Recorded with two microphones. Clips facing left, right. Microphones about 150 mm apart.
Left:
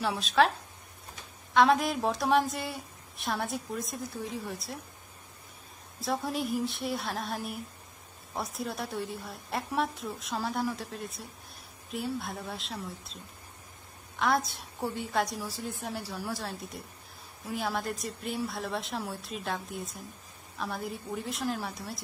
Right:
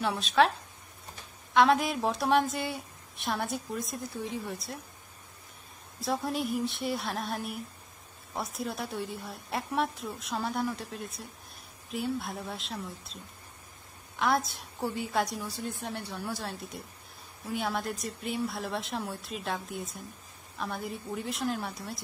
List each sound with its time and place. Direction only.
0.0 s a woman's voice: centre (ahead or behind)
1.5 s a woman's voice: centre (ahead or behind)
5.9 s a woman's voice: centre (ahead or behind)